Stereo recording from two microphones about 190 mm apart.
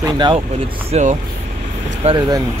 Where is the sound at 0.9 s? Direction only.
35° right (ahead or behind).